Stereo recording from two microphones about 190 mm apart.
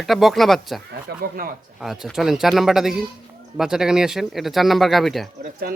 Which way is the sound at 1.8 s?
Centre (ahead or behind).